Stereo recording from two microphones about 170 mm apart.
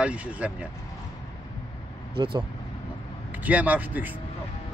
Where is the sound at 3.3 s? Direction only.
10° right (ahead or behind).